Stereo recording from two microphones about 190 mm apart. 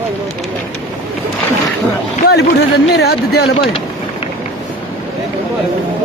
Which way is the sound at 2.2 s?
60° left (ahead or behind).